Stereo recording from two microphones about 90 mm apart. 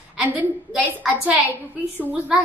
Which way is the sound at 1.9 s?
15° right (ahead or behind).